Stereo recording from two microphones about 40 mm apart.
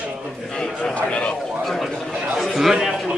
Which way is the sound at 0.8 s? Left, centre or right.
Left.